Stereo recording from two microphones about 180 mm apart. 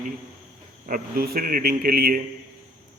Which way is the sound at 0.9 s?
50° right (ahead or behind).